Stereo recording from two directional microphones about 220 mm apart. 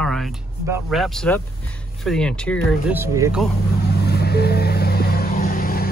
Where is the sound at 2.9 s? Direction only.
10° right (ahead or behind).